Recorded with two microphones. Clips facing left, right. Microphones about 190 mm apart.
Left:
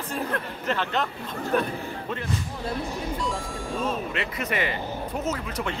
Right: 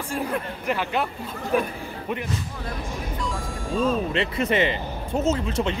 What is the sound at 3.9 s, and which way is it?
Speech, 30° right (ahead or behind).